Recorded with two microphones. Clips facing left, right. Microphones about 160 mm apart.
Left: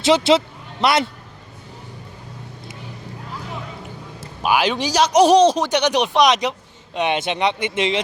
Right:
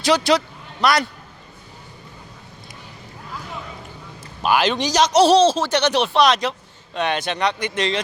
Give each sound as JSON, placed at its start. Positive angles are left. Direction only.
{"t": 0.0, "sound": "a man's voice", "side_deg": 25}
{"t": 4.4, "sound": "speech", "side_deg": 10}